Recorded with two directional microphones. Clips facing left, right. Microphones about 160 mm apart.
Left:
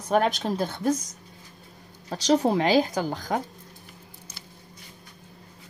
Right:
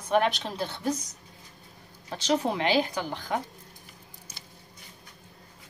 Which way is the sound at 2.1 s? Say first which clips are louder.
Left 5 dB; 40° left (ahead or behind).